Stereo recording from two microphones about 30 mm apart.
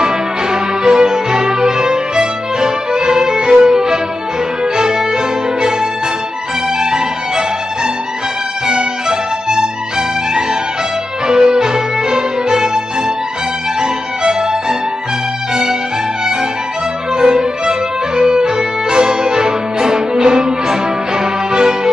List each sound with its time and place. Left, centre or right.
0.0 s music: right
17.1 s music: right